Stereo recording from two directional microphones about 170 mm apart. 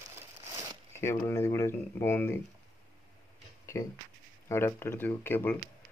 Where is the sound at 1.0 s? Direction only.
15° left (ahead or behind).